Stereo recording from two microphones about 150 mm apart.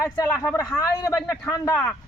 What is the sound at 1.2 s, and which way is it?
Speech, centre (ahead or behind).